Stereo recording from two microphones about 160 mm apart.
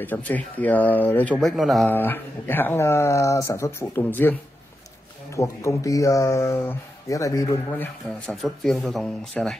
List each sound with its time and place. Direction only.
0.0 s speech: 10° left (ahead or behind)
1.9 s speech: 10° left (ahead or behind)
8.4 s speech: centre (ahead or behind)